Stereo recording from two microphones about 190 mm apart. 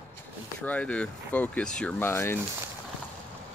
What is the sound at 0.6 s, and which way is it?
Speech, 5° left (ahead or behind).